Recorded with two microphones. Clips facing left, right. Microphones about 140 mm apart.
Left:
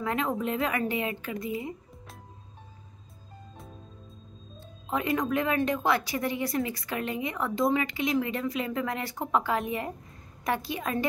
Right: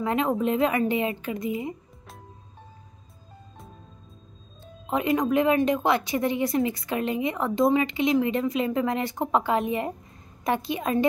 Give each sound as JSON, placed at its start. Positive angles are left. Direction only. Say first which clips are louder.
{"t": 0.0, "sound": "a woman's voice", "louder": "right 5 dB", "side_deg": -25}
{"t": 4.8, "sound": "a woman's voice", "louder": "right 4 dB", "side_deg": -20}